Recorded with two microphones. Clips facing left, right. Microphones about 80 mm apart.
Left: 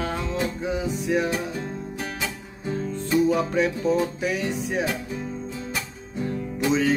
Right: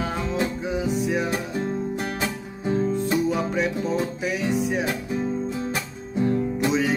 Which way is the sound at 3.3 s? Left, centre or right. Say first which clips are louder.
Left 1 dB; centre.